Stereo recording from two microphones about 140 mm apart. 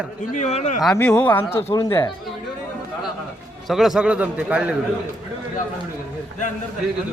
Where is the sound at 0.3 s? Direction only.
55° left (ahead or behind).